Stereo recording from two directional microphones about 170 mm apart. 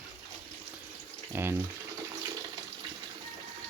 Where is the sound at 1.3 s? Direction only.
15° right (ahead or behind).